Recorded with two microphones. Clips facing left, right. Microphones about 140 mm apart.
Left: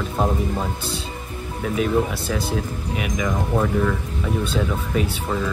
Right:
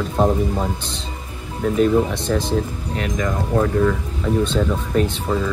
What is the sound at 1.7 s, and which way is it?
Speech, 5° left (ahead or behind).